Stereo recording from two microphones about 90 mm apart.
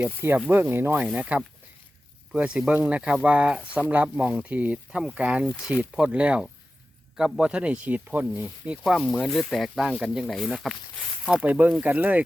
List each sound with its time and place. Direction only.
0.0 s speech: 25° right (ahead or behind)
1.0 s speech: 10° right (ahead or behind)
8.8 s speech: centre (ahead or behind)
11.4 s speech: 15° right (ahead or behind)